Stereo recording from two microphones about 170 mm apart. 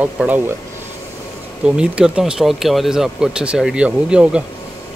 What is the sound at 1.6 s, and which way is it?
Speech, 5° right (ahead or behind).